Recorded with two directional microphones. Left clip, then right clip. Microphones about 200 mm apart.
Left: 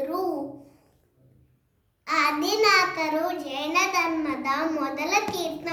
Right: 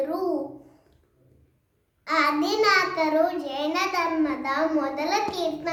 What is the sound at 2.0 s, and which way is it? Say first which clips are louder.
A child's voice: right 1 dB; 15° right (ahead or behind).